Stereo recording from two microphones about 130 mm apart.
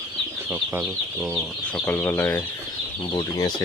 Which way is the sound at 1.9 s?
15° left (ahead or behind).